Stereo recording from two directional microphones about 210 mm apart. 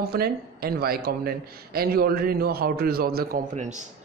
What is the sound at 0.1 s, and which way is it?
A man's voice, 45° right (ahead or behind).